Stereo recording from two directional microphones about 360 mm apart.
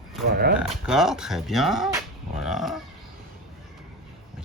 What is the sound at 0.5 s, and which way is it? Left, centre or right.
Speech, centre.